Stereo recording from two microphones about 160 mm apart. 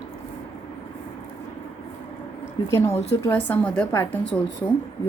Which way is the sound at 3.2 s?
10° left (ahead or behind).